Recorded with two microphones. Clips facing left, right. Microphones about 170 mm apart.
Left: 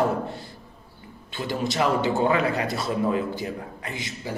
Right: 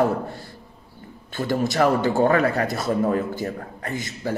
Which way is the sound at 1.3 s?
45° right (ahead or behind).